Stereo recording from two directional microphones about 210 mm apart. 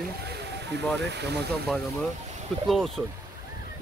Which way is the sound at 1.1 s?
55° right (ahead or behind).